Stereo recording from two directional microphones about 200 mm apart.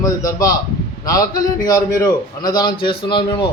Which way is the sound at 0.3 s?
20° left (ahead or behind).